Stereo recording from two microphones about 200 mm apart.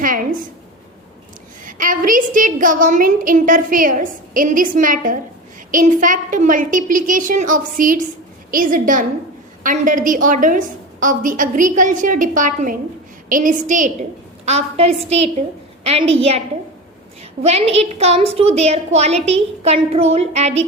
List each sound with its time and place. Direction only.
0.0 s a sound: 45° right (ahead or behind)
1.6 s a woman's voice: 40° right (ahead or behind)
17.4 s a woman's voice: 30° right (ahead or behind)